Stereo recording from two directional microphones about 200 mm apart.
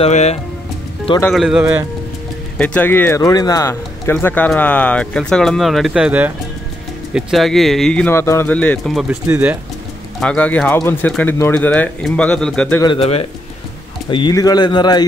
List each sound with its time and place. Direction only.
0.0 s speech: 35° left (ahead or behind)
1.3 s speech: 5° right (ahead or behind)
2.5 s speech: 5° left (ahead or behind)
9.3 s speech: 10° right (ahead or behind)
10.2 s speech: 5° left (ahead or behind)
12.8 s speech: 25° left (ahead or behind)